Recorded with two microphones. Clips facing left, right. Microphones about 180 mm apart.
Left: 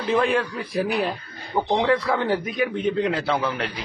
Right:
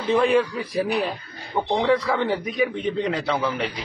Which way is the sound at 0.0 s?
Centre (ahead or behind).